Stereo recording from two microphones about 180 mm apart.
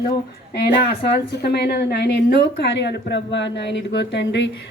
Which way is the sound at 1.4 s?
65° left (ahead or behind).